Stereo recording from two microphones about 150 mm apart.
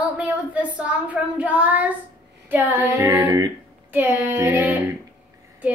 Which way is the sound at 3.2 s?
25° right (ahead or behind).